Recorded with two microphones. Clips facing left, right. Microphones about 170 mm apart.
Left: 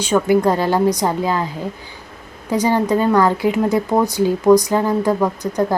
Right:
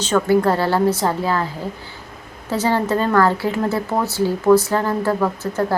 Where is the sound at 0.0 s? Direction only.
15° left (ahead or behind).